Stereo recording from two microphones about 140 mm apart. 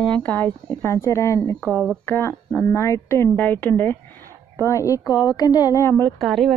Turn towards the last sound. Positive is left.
turn(degrees=0)  # may be behind; listen again after turning